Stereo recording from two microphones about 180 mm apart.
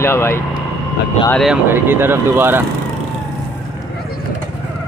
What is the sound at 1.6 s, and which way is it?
Speech, 10° right (ahead or behind).